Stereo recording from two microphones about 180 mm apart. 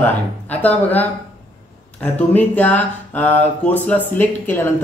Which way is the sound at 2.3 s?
10° left (ahead or behind).